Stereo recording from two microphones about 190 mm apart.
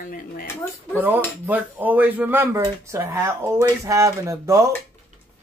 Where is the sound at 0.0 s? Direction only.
50° left (ahead or behind).